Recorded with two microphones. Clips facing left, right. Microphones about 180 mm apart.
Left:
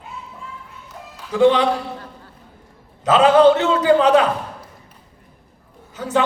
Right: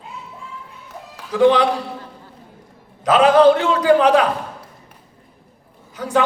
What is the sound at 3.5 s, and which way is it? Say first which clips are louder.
Speech: left 1 dB; 25° left (ahead or behind).